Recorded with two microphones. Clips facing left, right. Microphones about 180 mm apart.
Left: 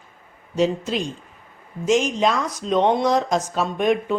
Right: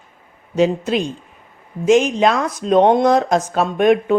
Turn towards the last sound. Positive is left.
turn(degrees=-60)  # may be behind; listen again after turning